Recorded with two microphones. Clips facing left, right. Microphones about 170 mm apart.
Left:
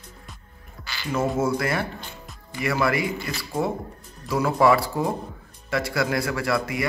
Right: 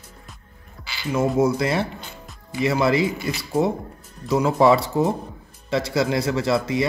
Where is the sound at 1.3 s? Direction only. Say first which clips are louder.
Right 4 dB; 20° right (ahead or behind).